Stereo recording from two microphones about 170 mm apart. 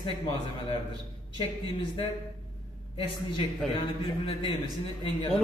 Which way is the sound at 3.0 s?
30° left (ahead or behind).